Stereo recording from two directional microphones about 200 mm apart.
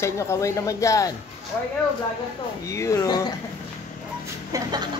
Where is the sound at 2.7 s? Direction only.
15° left (ahead or behind).